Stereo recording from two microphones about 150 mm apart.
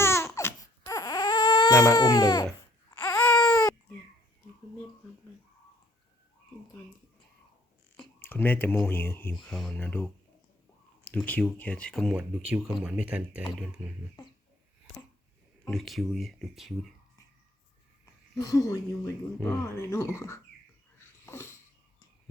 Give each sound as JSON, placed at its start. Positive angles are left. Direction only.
{"t": 0.0, "sound": "baby cry", "side_deg": 15}
{"t": 2.9, "sound": "baby cry", "side_deg": 15}
{"t": 8.2, "sound": "speech", "side_deg": 15}
{"t": 9.5, "sound": "speech", "side_deg": 0}
{"t": 11.3, "sound": "speech", "side_deg": 10}
{"t": 12.1, "sound": "speech", "side_deg": -10}
{"t": 15.7, "sound": "speech", "side_deg": 0}
{"t": 18.0, "sound": "speech", "side_deg": 20}
{"t": 21.2, "sound": "wheeze", "side_deg": 15}